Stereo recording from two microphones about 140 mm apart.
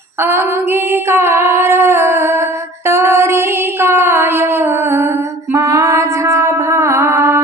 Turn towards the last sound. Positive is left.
turn(degrees=-20)  # may be behind; listen again after turning